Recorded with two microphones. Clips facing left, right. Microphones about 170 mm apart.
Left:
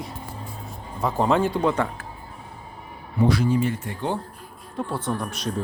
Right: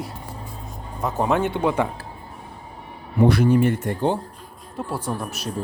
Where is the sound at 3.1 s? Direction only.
60° right (ahead or behind).